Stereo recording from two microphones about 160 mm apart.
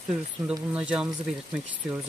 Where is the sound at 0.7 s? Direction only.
5° right (ahead or behind).